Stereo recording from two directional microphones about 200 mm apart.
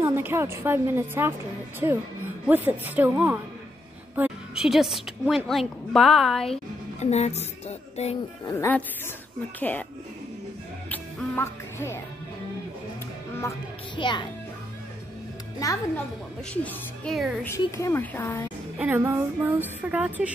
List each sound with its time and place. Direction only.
0.0 s a woman's voice: 10° right (ahead or behind)
6.5 s speech: 35° left (ahead or behind)
8.5 s a woman's voice: 10° left (ahead or behind)
10.9 s music: 10° left (ahead or behind)
13.9 s speech: 25° left (ahead or behind)
15.6 s a woman's voice: 15° left (ahead or behind)
16.6 s a woman's voice: 5° left (ahead or behind)
17.5 s a woman's voice: 15° left (ahead or behind)
18.8 s a woman's voice: 10° right (ahead or behind)